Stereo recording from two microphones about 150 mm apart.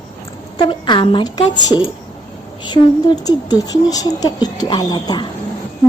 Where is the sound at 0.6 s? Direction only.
30° left (ahead or behind).